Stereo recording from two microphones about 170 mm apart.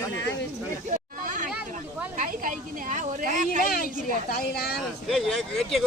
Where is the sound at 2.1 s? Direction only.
50° right (ahead or behind).